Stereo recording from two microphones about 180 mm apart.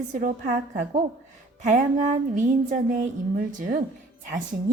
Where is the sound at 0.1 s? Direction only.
45° right (ahead or behind).